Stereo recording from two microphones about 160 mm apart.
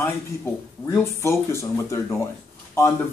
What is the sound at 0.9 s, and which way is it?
A man's voice, 15° left (ahead or behind).